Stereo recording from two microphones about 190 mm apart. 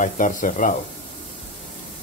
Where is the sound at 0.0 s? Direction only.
45° left (ahead or behind).